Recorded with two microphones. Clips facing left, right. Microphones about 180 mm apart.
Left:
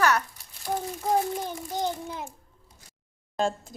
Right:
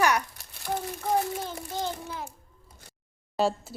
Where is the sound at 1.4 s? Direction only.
15° left (ahead or behind).